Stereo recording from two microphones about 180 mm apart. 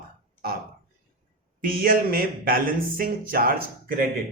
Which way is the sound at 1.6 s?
50° right (ahead or behind).